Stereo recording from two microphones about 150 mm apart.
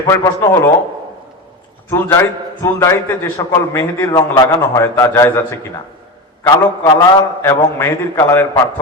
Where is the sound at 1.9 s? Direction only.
15° left (ahead or behind).